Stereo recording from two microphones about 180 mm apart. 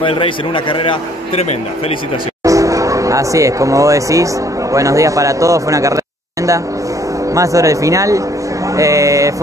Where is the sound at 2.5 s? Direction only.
15° right (ahead or behind).